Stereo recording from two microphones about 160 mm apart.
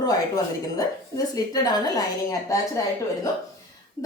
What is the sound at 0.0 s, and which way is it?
Speech, 25° left (ahead or behind).